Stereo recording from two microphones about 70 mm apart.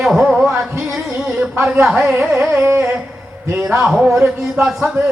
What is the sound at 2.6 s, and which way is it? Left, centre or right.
Mantra, right.